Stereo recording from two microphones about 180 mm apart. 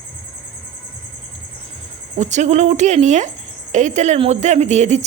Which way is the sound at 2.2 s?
40° right (ahead or behind).